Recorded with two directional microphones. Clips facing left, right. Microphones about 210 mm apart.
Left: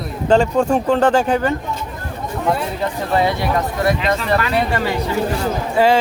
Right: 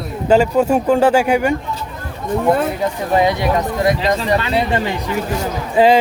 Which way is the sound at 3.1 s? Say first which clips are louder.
Right 2 dB; 15° right (ahead or behind).